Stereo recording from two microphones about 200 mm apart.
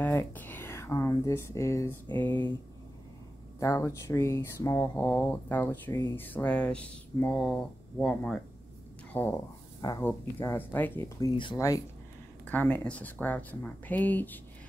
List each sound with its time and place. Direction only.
0.0 s speech: 10° left (ahead or behind)
2.0 s speech: 25° right (ahead or behind)
3.5 s speech: 15° left (ahead or behind)